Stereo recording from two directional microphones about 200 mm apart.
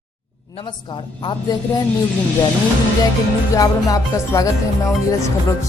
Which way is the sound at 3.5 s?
15° left (ahead or behind).